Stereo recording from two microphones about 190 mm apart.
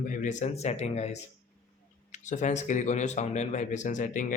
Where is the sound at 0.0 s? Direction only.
40° left (ahead or behind).